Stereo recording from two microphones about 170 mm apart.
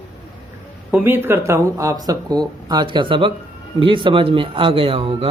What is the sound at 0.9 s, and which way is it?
Speech, 10° right (ahead or behind).